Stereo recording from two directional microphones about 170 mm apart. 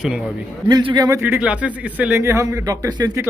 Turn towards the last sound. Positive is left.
turn(degrees=-25)  # may be behind; listen again after turning